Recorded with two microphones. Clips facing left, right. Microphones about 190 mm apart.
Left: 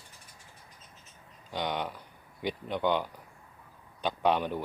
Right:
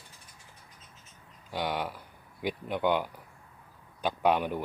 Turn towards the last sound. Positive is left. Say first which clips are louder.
# right 1 dB
turn(degrees=-10)  # may be behind; listen again after turning